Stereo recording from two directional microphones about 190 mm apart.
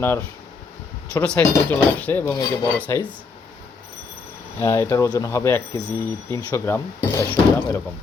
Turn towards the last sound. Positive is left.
turn(degrees=15)  # may be behind; listen again after turning